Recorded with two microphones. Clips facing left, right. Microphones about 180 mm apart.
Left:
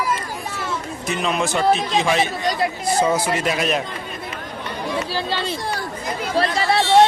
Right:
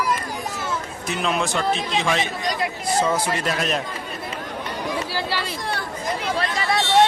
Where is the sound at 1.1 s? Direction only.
Centre (ahead or behind).